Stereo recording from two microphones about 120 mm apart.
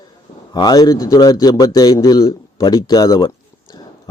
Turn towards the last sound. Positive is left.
turn(degrees=35)  # may be behind; listen again after turning